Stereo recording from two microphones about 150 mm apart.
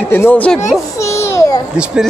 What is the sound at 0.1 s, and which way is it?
Speech, 10° left (ahead or behind).